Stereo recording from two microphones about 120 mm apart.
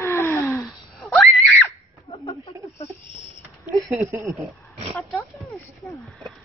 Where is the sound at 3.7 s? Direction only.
20° right (ahead or behind).